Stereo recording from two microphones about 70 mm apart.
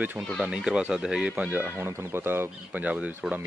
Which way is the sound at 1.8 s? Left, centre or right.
Right.